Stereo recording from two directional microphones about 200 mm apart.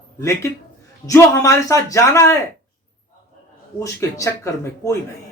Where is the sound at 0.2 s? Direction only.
15° left (ahead or behind).